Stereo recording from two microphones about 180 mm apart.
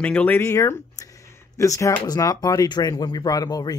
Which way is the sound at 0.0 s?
10° left (ahead or behind).